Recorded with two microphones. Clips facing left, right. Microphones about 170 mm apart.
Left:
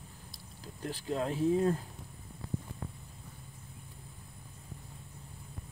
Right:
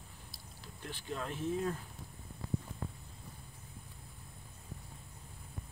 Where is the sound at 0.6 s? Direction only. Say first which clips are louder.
Left 7 dB; 40° left (ahead or behind).